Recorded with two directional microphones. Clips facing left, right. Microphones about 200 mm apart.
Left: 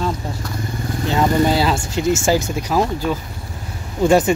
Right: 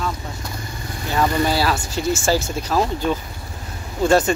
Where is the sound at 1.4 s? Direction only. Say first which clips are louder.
Left 3 dB; 20° left (ahead or behind).